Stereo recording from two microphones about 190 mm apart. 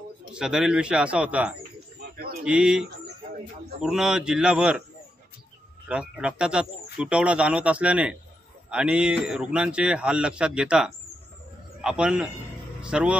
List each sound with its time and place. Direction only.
0.3 s speech: 5° right (ahead or behind)
2.0 s a sound: 55° right (ahead or behind)
2.4 s speech: 5° right (ahead or behind)
5.9 s speech: 5° right (ahead or behind)